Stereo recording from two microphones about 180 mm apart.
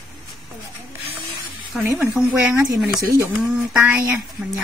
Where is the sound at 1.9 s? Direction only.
5° right (ahead or behind).